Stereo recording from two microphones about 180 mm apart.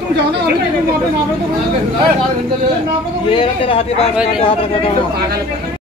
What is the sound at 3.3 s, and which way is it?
Speech, 30° left (ahead or behind).